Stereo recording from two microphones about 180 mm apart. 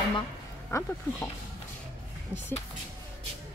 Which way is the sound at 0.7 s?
15° left (ahead or behind).